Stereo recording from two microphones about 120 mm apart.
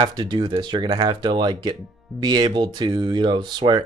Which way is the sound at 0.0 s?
40° right (ahead or behind).